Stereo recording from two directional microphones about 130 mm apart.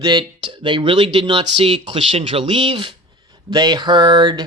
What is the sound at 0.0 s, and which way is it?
Speech, 35° right (ahead or behind).